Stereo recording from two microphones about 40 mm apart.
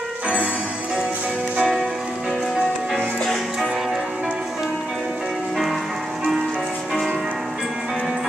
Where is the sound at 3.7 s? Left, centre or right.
Centre.